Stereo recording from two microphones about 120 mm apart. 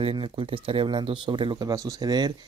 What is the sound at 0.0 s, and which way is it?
Speech, 45° right (ahead or behind).